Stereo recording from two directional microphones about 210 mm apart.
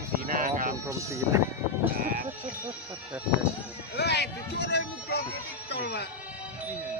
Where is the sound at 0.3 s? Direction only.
40° right (ahead or behind).